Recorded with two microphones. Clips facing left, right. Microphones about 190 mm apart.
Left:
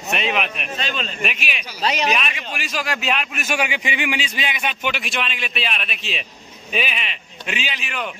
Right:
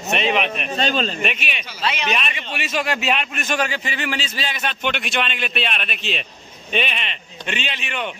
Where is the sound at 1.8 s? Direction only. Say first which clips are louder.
Left 3 dB; 40° left (ahead or behind).